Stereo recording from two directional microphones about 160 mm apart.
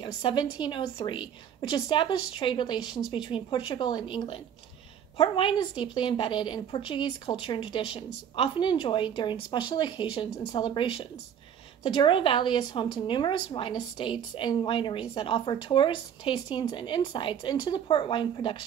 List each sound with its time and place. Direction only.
0.0 s a woman's voice: 30° left (ahead or behind)